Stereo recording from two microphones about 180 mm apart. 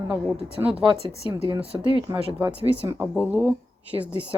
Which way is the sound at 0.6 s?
5° right (ahead or behind).